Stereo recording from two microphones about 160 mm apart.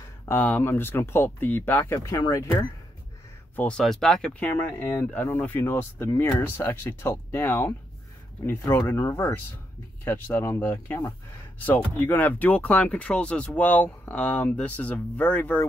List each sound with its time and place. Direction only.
0.2 s speech: 10° left (ahead or behind)
3.5 s speech: 5° left (ahead or behind)